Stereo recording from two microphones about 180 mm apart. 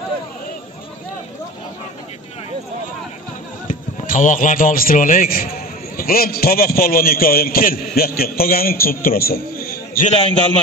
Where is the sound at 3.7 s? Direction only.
45° left (ahead or behind).